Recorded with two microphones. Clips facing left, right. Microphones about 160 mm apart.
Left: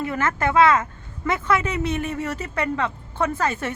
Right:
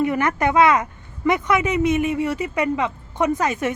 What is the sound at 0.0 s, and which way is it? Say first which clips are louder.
Speech: right 4 dB; 20° right (ahead or behind).